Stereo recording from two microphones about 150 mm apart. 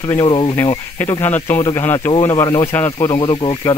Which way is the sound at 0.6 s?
15° left (ahead or behind).